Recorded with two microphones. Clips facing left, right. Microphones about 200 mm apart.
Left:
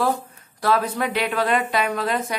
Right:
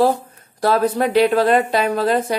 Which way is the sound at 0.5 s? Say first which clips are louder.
Right 5 dB; 35° right (ahead or behind).